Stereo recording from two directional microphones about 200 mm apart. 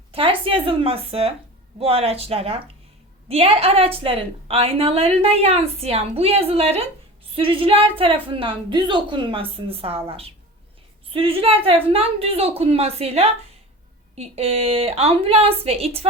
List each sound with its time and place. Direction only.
0.1 s a woman's voice: 25° right (ahead or behind)